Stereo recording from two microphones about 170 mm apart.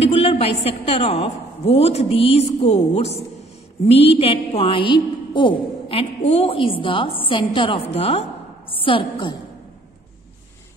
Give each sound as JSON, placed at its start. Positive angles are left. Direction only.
{"t": 0.0, "sound": "a woman's voice", "side_deg": 40}